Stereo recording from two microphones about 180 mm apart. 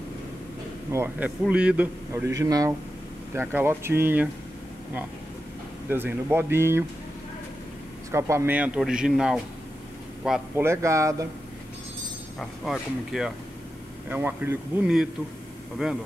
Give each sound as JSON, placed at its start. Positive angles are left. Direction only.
{"t": 0.9, "sound": "a man's voice", "side_deg": -10}
{"t": 5.9, "sound": "a man's voice", "side_deg": -10}
{"t": 8.1, "sound": "a man's voice", "side_deg": -15}
{"t": 10.5, "sound": "a man's voice", "side_deg": -15}
{"t": 12.4, "sound": "a man's voice", "side_deg": 0}